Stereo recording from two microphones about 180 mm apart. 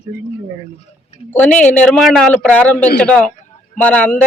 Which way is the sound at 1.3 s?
10° left (ahead or behind).